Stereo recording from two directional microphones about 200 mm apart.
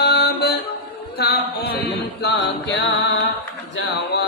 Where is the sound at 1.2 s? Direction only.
55° left (ahead or behind).